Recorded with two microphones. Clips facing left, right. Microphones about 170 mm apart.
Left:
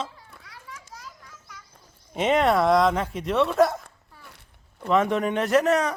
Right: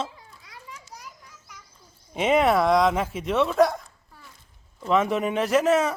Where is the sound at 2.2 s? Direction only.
Centre (ahead or behind).